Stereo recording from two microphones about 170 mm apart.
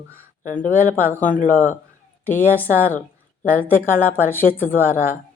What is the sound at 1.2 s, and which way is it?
Speech, 50° left (ahead or behind).